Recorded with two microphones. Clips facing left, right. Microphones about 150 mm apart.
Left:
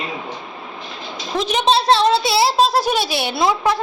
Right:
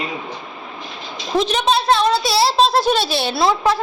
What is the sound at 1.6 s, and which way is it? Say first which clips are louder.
Speech: left 4 dB; 30° left (ahead or behind).